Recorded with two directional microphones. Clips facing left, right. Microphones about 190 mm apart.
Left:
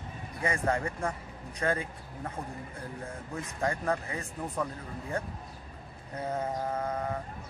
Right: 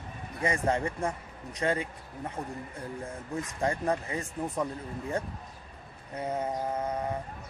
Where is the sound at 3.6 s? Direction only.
25° right (ahead or behind).